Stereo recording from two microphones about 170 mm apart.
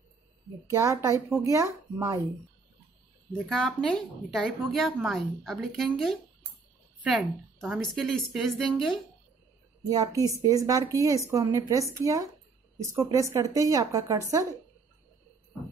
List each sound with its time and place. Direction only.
0.7 s a woman's voice: 15° right (ahead or behind)
3.5 s a woman's voice: 5° left (ahead or behind)
9.8 s speech: 20° right (ahead or behind)